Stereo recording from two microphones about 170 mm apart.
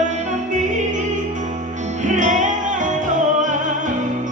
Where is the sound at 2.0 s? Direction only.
45° right (ahead or behind).